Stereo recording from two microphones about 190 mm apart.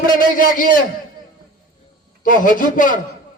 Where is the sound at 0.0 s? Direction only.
45° left (ahead or behind).